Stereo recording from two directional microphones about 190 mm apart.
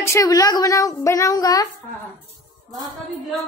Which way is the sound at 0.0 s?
15° left (ahead or behind).